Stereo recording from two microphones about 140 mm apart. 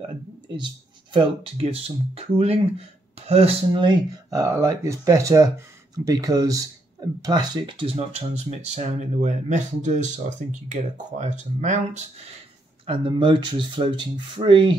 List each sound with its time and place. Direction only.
1.1 s speech: 40° right (ahead or behind)
3.7 s speech: 30° right (ahead or behind); by 12.0 s 60° right (ahead or behind)
12.8 s speech: 35° right (ahead or behind)